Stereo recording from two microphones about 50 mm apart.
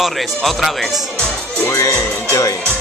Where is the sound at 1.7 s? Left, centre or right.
Left.